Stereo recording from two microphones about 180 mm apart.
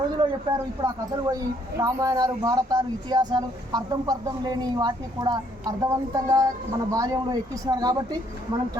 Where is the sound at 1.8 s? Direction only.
20° right (ahead or behind).